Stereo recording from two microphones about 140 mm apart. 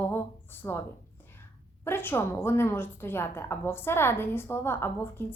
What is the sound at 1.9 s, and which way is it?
A woman's voice, 15° left (ahead or behind).